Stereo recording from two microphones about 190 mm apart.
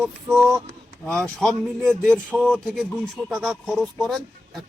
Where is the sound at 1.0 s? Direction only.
5° left (ahead or behind).